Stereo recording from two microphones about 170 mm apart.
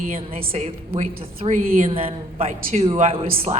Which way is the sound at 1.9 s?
35° right (ahead or behind).